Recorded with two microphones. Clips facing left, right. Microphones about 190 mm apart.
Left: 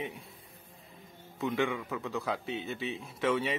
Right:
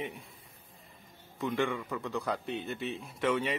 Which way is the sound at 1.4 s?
5° left (ahead or behind).